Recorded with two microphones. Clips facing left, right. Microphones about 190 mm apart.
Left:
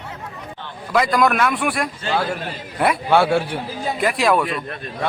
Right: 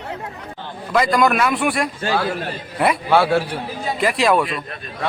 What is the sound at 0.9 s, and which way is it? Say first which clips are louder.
A man's voice: right 1 dB; centre (ahead or behind).